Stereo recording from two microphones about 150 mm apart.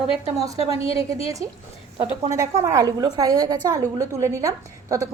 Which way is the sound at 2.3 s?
20° right (ahead or behind).